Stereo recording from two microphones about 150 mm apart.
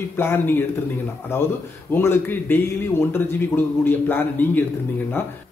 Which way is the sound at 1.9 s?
15° left (ahead or behind).